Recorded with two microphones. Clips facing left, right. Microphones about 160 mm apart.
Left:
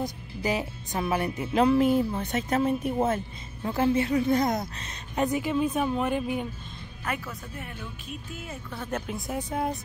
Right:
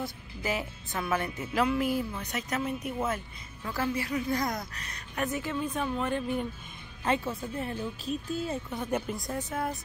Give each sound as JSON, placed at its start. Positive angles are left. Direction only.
{"t": 0.0, "sound": "speech", "side_deg": 15}
{"t": 7.1, "sound": "speech", "side_deg": -30}
{"t": 8.6, "sound": "speech", "side_deg": -15}
{"t": 9.0, "sound": "speech", "side_deg": 0}
{"t": 9.4, "sound": "speech", "side_deg": 15}